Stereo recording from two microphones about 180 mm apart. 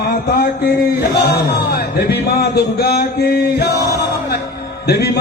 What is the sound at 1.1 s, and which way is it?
A man's voice, 60° left (ahead or behind).